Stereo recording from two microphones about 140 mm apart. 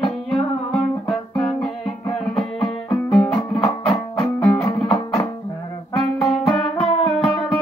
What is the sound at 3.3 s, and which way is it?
Music, 35° left (ahead or behind).